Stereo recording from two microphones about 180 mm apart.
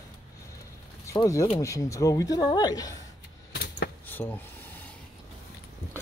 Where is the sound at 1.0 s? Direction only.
15° left (ahead or behind).